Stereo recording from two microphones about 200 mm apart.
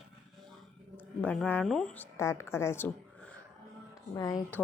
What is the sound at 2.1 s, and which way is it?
Speech, 15° left (ahead or behind).